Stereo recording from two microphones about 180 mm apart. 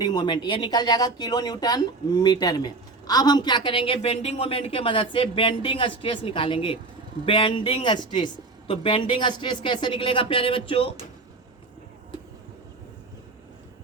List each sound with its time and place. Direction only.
0.0 s speech: 25° left (ahead or behind)